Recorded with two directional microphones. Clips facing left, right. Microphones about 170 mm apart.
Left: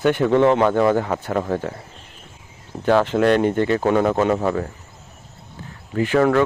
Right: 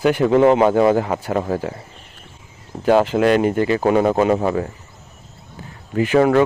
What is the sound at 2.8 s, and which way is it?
A man's voice, 10° right (ahead or behind).